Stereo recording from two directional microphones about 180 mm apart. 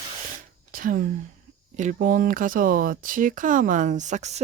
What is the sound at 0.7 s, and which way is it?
Speech, 50° right (ahead or behind).